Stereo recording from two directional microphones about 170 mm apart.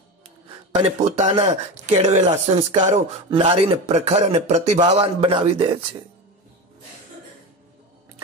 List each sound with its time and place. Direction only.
0.8 s speech: 40° right (ahead or behind)